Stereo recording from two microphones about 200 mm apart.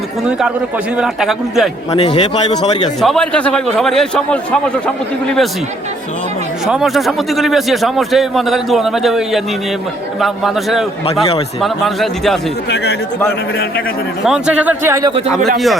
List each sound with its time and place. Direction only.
0.3 s a man's voice: 5° right (ahead or behind)
2.0 s a man's voice: 35° left (ahead or behind)
3.0 s a man's voice: centre (ahead or behind)
6.7 s a man's voice: centre (ahead or behind)
11.0 s a man's voice: 30° left (ahead or behind)
11.6 s a man's voice: centre (ahead or behind)
12.6 s a man's voice: 60° left (ahead or behind)
14.3 s a man's voice: 5° right (ahead or behind)
15.5 s a man's voice: centre (ahead or behind)